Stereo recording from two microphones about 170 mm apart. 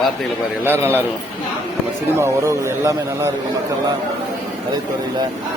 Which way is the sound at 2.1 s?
15° right (ahead or behind).